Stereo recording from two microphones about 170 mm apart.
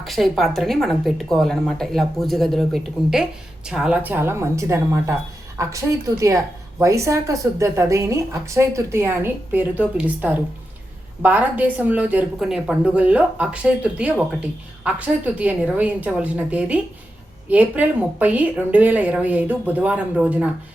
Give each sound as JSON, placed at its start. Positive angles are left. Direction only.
{"t": 0.0, "sound": "a woman's voice", "side_deg": 0}